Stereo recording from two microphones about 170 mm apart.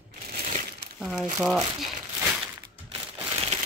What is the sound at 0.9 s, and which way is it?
Speech, 5° left (ahead or behind).